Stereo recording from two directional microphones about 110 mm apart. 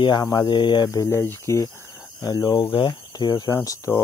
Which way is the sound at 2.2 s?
35° left (ahead or behind).